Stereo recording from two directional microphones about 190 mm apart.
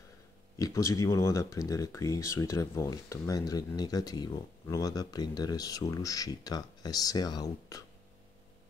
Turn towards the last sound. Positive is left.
turn(degrees=20)  # may be behind; listen again after turning